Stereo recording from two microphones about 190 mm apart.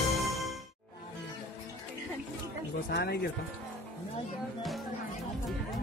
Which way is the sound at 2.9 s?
60° left (ahead or behind).